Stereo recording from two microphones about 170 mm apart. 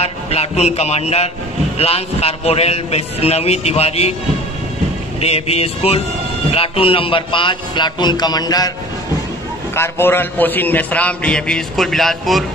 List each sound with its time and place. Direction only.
0.0 s a man's voice: 40° left (ahead or behind)
5.2 s a man's voice: 35° left (ahead or behind)
9.8 s a man's voice: 15° left (ahead or behind)